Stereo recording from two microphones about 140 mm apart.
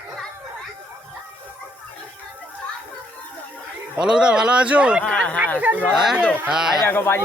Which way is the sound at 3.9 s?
5° right (ahead or behind).